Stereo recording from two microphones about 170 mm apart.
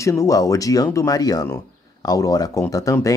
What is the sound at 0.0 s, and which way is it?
Speech, 20° left (ahead or behind).